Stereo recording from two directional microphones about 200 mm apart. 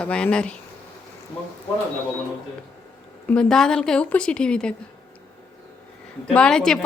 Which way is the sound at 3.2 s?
5° left (ahead or behind).